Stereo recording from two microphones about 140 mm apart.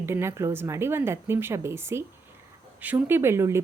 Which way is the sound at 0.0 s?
20° right (ahead or behind).